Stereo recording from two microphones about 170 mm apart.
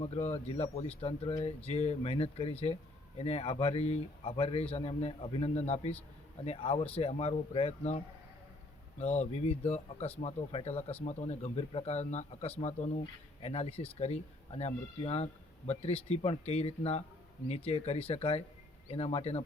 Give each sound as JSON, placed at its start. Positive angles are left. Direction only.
{"t": 0.0, "sound": "speech", "side_deg": 40}